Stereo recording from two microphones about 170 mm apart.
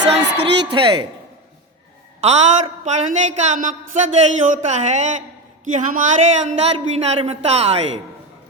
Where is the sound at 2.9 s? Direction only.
45° right (ahead or behind).